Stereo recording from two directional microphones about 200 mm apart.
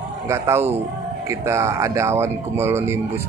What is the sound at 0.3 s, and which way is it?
Speech, 10° right (ahead or behind).